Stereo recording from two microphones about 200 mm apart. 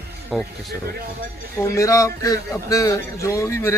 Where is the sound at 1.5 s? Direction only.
15° left (ahead or behind).